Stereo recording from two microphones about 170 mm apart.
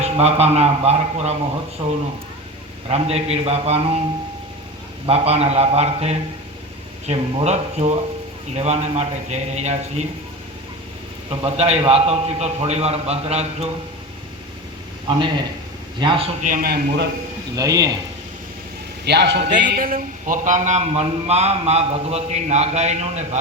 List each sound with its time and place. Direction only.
0.0 s a man's voice: 40° right (ahead or behind)
5.0 s a man's voice: 35° right (ahead or behind)
11.3 s a man's voice: 40° right (ahead or behind)
16.0 s a man's voice: 30° right (ahead or behind)
16.4 s a man's voice: 55° right (ahead or behind); by 17.1 s 75° right (ahead or behind)
17.5 s a man's voice: 20° right (ahead or behind)
19.0 s a man's voice: 85° right
19.7 s a man's voice: 55° right (ahead or behind)